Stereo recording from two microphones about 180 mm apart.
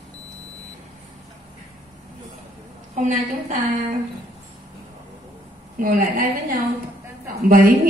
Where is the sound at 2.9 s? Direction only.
45° right (ahead or behind).